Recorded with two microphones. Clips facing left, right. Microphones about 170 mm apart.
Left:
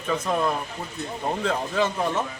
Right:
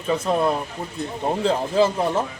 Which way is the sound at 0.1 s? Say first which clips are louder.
Right 4 dB; 25° right (ahead or behind).